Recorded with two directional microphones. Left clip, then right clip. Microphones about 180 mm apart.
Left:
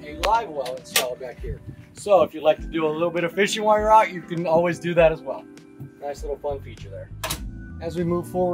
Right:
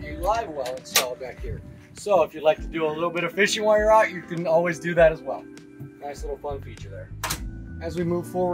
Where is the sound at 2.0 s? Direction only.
35° left (ahead or behind).